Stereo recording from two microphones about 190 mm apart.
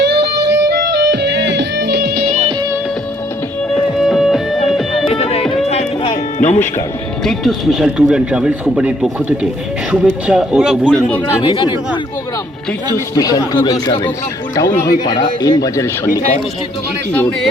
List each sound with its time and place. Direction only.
0.1 s music: 60° right (ahead or behind)
3.9 s music: centre (ahead or behind)
5.0 s music: 30° left (ahead or behind)
7.3 s speech: centre (ahead or behind)
11.4 s speech: 25° left (ahead or behind)
12.9 s speech: 20° left (ahead or behind)